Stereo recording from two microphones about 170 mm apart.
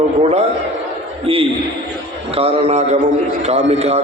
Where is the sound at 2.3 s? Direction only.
35° right (ahead or behind).